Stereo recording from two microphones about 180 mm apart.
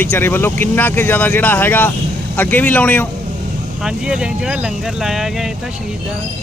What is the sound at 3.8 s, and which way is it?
Speech, 5° right (ahead or behind).